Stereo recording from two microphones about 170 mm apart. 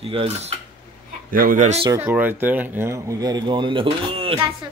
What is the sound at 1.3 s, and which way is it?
Speech, 55° right (ahead or behind).